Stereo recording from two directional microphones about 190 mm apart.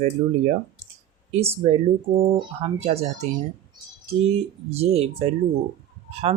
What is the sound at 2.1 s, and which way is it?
Speech, 20° right (ahead or behind).